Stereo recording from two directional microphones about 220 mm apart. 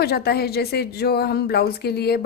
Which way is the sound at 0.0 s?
45° left (ahead or behind).